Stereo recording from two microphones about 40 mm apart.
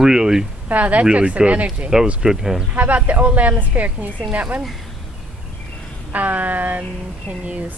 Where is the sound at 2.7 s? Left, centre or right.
Right.